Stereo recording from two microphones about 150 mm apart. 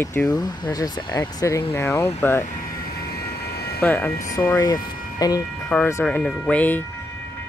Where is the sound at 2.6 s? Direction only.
75° left (ahead or behind); by 3.8 s 90° left.